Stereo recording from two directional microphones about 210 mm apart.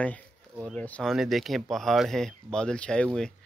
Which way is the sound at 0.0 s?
5° left (ahead or behind).